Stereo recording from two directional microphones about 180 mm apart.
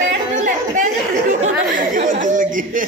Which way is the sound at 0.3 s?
45° right (ahead or behind).